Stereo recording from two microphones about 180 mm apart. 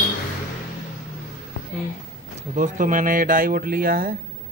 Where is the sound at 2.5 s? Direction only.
45° right (ahead or behind).